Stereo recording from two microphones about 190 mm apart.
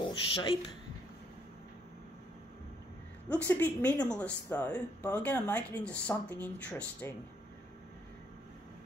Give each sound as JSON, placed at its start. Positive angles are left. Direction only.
{"t": 0.0, "sound": "speech", "side_deg": 25}
{"t": 3.3, "sound": "speech", "side_deg": 10}